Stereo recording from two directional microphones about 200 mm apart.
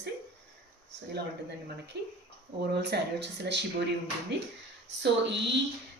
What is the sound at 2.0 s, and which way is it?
A woman's voice, 55° right (ahead or behind).